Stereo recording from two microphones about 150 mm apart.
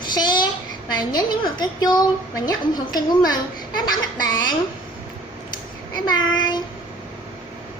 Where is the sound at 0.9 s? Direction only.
30° left (ahead or behind).